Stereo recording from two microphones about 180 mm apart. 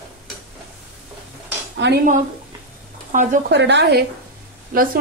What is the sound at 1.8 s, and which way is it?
Speech, 75° right (ahead or behind).